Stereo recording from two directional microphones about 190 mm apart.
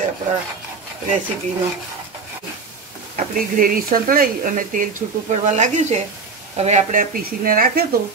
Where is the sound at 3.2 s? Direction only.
45° right (ahead or behind).